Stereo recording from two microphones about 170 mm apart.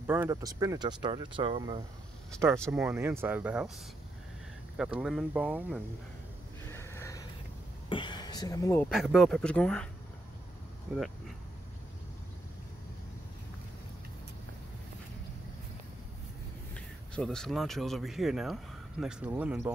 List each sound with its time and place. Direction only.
0.0 s speech: 15° right (ahead or behind); by 1.9 s 30° right (ahead or behind)
2.6 s speech: 5° right (ahead or behind)
2.9 s speech: 15° right (ahead or behind)
4.7 s speech: 5° right (ahead or behind)
6.7 s a sound: 15° left (ahead or behind)
7.9 s a sound: 25° left (ahead or behind)
8.8 s speech: centre (ahead or behind)
16.7 s speech: 5° left (ahead or behind)